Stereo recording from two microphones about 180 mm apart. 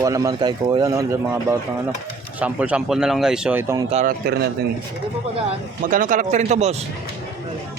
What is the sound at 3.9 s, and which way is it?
Speech, 40° right (ahead or behind).